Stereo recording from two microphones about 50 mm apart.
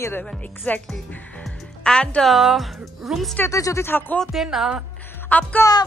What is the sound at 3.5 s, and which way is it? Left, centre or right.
Speech, left.